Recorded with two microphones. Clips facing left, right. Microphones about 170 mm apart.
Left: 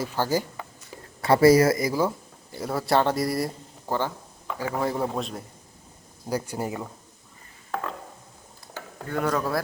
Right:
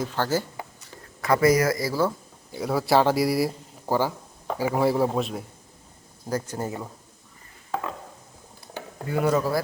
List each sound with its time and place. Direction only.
0.0 s speech: 10° left (ahead or behind)
1.2 s speech: 30° left (ahead or behind); by 2.1 s 15° left (ahead or behind)
2.5 s speech: centre (ahead or behind)
6.2 s speech: 10° left (ahead or behind)
9.0 s speech: 5° right (ahead or behind)